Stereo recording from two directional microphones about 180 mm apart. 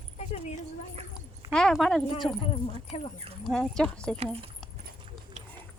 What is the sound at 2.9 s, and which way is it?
Speech, 35° left (ahead or behind).